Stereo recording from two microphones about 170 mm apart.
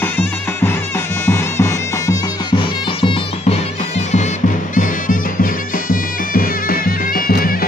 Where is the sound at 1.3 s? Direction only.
15° left (ahead or behind).